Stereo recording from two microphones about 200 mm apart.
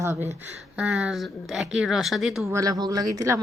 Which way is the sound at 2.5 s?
15° right (ahead or behind).